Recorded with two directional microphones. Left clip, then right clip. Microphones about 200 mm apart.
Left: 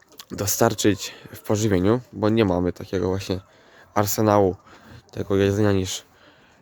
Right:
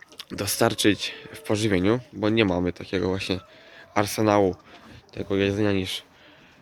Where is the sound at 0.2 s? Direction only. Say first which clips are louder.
Left 2 dB; 25° left (ahead or behind).